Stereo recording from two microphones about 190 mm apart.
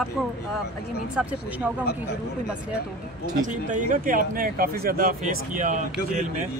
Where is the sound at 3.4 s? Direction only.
45° right (ahead or behind).